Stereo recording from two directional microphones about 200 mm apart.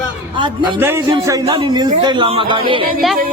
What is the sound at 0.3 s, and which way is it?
Speech, 25° right (ahead or behind).